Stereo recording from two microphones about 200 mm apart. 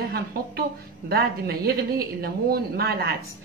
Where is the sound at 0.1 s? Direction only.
50° right (ahead or behind).